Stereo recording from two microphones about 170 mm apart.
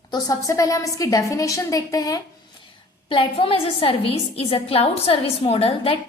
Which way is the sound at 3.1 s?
30° left (ahead or behind).